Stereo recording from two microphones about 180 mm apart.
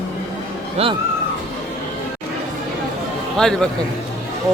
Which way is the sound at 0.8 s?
35° right (ahead or behind).